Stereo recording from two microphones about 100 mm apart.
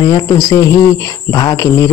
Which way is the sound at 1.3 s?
40° left (ahead or behind).